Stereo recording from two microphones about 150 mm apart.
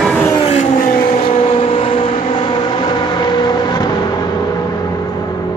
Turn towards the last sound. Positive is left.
turn(degrees=25)  # may be behind; listen again after turning